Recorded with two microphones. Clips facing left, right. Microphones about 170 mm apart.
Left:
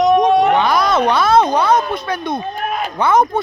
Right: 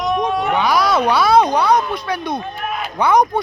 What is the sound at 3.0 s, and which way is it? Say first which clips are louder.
Speech: even; 10° right (ahead or behind).